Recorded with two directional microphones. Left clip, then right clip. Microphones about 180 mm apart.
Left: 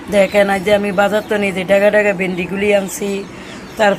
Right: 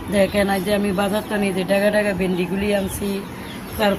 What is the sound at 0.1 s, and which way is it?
Speech, 25° left (ahead or behind).